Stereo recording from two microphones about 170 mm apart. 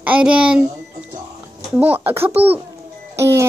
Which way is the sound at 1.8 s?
10° right (ahead or behind).